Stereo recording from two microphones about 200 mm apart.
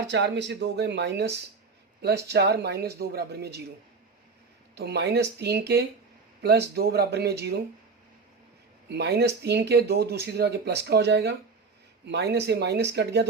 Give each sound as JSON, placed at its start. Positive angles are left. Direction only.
{"t": 0.1, "sound": "speech", "side_deg": -60}
{"t": 4.7, "sound": "speech", "side_deg": -55}
{"t": 8.9, "sound": "speech", "side_deg": -55}